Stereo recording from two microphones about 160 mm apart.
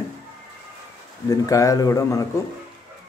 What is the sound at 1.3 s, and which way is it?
Speech, 20° left (ahead or behind).